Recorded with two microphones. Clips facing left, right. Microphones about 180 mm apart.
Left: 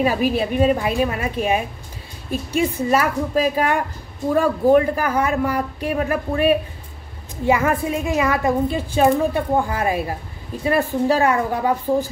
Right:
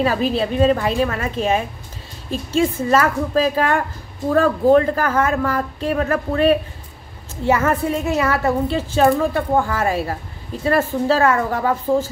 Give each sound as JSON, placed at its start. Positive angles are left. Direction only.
{"t": 0.0, "sound": "a woman's voice", "side_deg": 15}